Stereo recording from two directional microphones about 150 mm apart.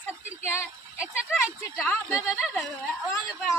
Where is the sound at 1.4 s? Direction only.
15° left (ahead or behind).